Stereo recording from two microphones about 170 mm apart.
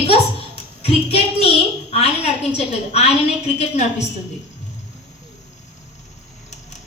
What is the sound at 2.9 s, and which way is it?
Speech, 40° left (ahead or behind).